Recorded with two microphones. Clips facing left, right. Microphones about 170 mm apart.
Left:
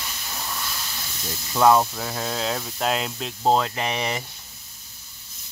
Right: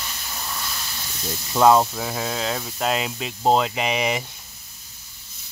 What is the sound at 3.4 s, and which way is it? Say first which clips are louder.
Speech: right 2 dB; 15° right (ahead or behind).